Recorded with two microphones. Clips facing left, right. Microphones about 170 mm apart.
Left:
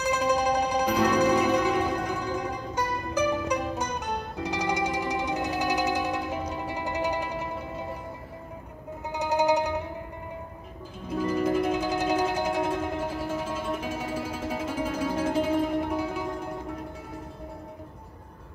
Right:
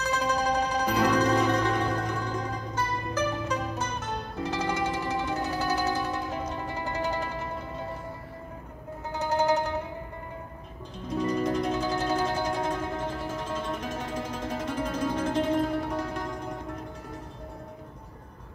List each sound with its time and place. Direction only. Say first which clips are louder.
0.0 s music: left 3 dB; 15° left (ahead or behind)
0.8 s music: even; 5° right (ahead or behind)
1.1 s music: left 2 dB; 10° left (ahead or behind)
9.1 s music: left 1 dB; 15° left (ahead or behind)
11.1 s music: left 1 dB; 5° left (ahead or behind)